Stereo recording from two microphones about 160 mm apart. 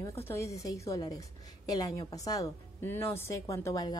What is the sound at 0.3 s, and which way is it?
A woman's voice, 20° left (ahead or behind).